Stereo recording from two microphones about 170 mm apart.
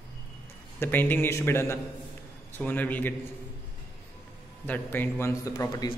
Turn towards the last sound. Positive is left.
turn(degrees=25)  # may be behind; listen again after turning